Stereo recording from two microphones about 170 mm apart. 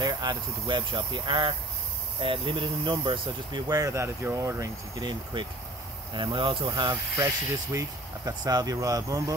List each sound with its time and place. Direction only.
0.0 s speech: 25° right (ahead or behind)
8.3 s speech: 20° right (ahead or behind)